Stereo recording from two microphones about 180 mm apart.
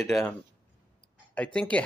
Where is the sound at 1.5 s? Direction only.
5° left (ahead or behind).